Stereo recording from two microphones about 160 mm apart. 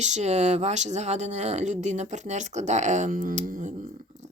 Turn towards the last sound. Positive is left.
turn(degrees=-55)  # may be behind; listen again after turning